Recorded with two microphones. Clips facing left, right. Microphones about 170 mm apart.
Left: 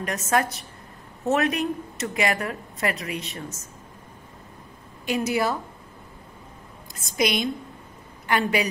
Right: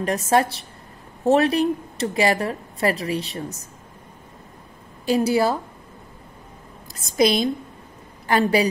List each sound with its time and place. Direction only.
0.0 s a woman's voice: 30° right (ahead or behind)
5.0 s a woman's voice: 30° right (ahead or behind)
7.2 s a woman's voice: 35° right (ahead or behind)